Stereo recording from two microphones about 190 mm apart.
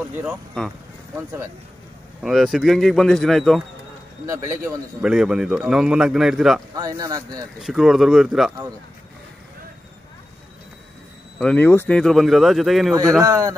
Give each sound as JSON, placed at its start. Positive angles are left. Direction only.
{"t": 0.1, "sound": "a man's voice", "side_deg": -10}
{"t": 2.2, "sound": "a man's voice", "side_deg": 0}
{"t": 5.0, "sound": "a man's voice", "side_deg": -5}
{"t": 6.7, "sound": "speech", "side_deg": -20}
{"t": 7.6, "sound": "a man's voice", "side_deg": 0}
{"t": 11.3, "sound": "a man's voice", "side_deg": 5}
{"t": 13.2, "sound": "a man's voice", "side_deg": -15}